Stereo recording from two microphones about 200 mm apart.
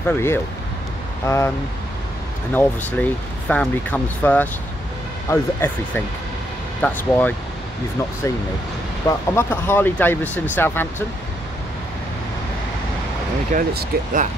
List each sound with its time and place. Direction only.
0.0 s speech: 10° left (ahead or behind)
2.5 s speech: 5° left (ahead or behind)
9.0 s speech: 10° left (ahead or behind)
13.5 s speech: 40° right (ahead or behind)